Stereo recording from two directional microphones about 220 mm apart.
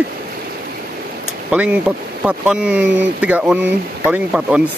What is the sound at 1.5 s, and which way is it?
Speech, 5° right (ahead or behind).